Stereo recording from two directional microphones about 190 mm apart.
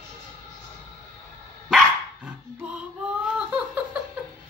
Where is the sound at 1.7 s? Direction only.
5° right (ahead or behind).